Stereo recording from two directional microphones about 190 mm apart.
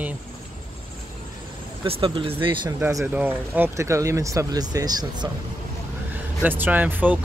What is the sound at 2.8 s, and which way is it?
Speech, 15° right (ahead or behind).